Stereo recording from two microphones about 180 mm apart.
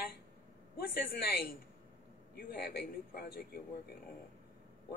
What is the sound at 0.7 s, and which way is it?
A woman's voice, 60° left (ahead or behind).